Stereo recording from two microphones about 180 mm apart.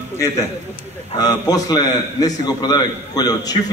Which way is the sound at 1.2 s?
20° left (ahead or behind).